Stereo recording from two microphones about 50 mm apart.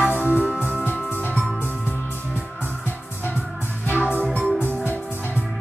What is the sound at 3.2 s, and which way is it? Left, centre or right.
Music, left.